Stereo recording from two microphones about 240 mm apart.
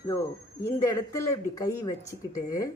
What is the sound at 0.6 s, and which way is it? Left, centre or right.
Speech, centre.